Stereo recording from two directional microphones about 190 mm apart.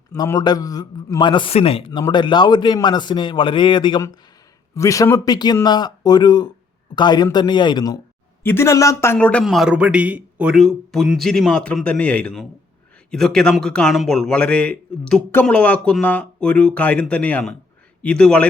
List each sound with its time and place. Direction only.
0.2 s a man's voice: 20° left (ahead or behind); by 18.4 s 5° left (ahead or behind)